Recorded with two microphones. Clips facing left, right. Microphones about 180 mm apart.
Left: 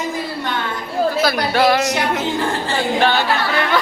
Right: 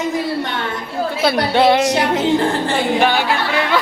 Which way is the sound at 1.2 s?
25° right (ahead or behind).